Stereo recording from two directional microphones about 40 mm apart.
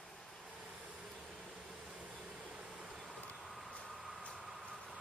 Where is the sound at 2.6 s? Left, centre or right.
Centre.